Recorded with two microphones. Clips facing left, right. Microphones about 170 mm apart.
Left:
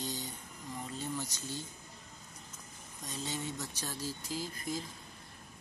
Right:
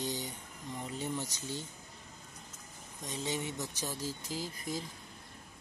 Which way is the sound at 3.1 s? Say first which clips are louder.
Right 3 dB; 20° right (ahead or behind).